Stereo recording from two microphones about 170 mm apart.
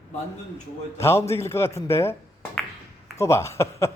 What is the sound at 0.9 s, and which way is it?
A man's voice, 15° left (ahead or behind).